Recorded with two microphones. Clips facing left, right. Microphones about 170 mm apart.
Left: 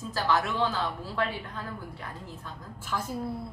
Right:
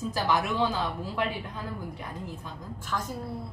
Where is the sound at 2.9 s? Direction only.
5° left (ahead or behind).